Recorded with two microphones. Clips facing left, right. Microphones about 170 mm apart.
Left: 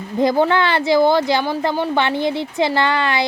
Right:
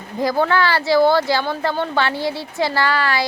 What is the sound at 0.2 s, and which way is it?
Speech, 20° left (ahead or behind).